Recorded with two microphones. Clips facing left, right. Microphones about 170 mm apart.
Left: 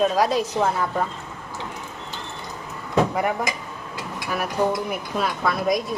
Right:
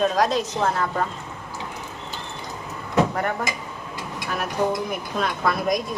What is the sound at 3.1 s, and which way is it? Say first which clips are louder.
Speech: left 2 dB; 10° left (ahead or behind).